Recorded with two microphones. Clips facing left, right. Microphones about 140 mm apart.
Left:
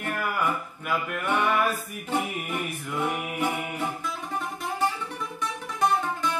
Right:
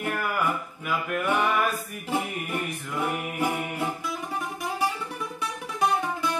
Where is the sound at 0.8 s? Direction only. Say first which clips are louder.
Right 1 dB; 10° right (ahead or behind).